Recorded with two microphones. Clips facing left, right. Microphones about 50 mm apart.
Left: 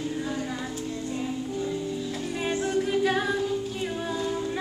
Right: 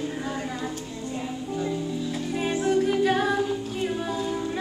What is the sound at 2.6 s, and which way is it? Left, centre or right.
Music, centre.